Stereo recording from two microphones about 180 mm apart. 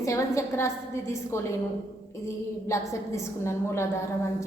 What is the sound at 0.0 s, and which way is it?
A woman's voice, 15° left (ahead or behind).